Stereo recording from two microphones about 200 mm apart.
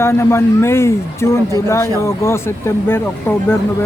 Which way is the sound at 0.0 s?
10° left (ahead or behind).